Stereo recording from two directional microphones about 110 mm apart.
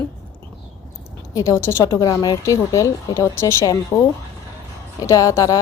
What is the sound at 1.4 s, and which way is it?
Speech, 25° left (ahead or behind).